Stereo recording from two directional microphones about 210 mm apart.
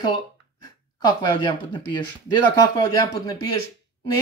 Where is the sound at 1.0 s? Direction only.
20° left (ahead or behind).